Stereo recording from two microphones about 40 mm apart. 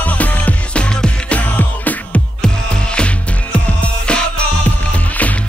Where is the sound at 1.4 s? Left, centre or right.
Left.